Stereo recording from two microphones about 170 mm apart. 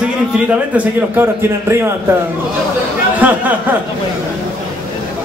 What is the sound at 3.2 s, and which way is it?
Speech, 10° right (ahead or behind).